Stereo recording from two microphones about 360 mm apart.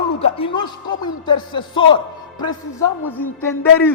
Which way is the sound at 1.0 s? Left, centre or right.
Centre.